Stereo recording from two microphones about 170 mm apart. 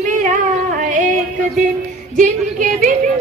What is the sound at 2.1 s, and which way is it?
Speech, 50° right (ahead or behind).